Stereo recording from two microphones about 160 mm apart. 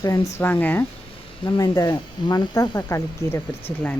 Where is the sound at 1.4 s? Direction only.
25° left (ahead or behind).